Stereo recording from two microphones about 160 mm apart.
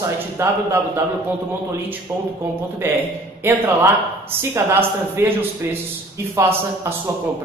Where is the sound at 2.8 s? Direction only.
15° right (ahead or behind).